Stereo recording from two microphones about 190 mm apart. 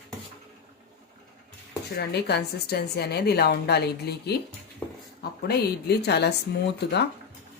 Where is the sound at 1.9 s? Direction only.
60° left (ahead or behind).